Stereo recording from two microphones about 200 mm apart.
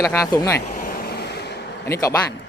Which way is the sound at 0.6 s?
45° left (ahead or behind).